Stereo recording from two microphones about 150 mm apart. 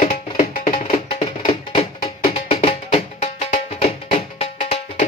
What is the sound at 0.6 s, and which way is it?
Music, 45° left (ahead or behind).